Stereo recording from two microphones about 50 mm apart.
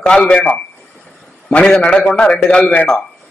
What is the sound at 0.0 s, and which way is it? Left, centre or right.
Speech, centre.